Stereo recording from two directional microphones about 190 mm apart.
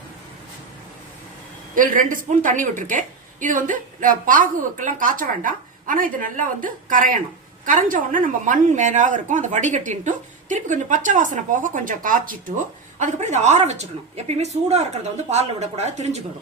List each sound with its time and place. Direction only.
1.7 s a woman's voice: 45° right (ahead or behind)